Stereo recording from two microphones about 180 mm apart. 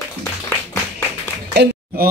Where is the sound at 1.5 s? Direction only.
65° right (ahead or behind).